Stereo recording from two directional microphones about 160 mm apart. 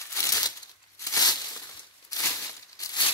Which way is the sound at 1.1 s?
25° left (ahead or behind).